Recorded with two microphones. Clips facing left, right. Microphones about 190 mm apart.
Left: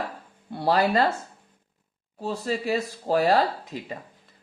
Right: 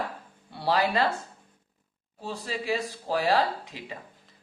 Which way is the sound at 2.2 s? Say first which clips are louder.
Left 5 dB; 40° left (ahead or behind).